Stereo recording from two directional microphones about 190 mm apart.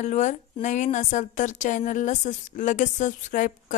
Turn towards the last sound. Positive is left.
turn(degrees=45)  # may be behind; listen again after turning